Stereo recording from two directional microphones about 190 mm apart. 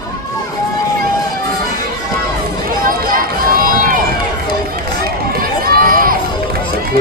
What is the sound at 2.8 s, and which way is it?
Run, 50° right (ahead or behind).